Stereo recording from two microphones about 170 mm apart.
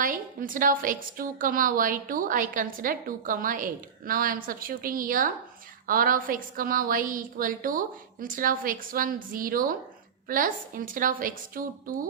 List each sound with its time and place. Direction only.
0.0 s a woman's voice: 55° right (ahead or behind)